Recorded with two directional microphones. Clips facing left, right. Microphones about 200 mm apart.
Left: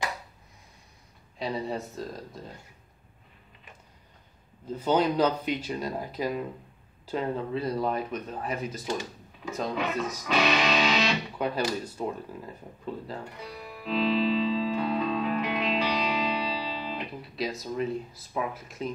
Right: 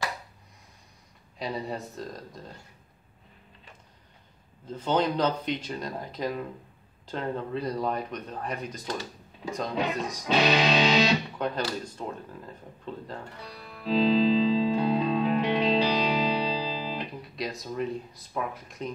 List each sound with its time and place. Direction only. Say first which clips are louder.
1.4 s speech: left 2 dB; centre (ahead or behind)
4.6 s speech: left 2 dB; 10° left (ahead or behind)
10.2 s music: right 3 dB; 30° right (ahead or behind)
11.3 s speech: left 1 dB; 10° left (ahead or behind)
13.8 s music: right 4 dB; 35° right (ahead or behind)
17.4 s speech: left 2 dB; centre (ahead or behind)